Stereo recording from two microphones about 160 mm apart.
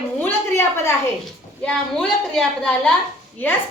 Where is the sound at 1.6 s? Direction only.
5° left (ahead or behind).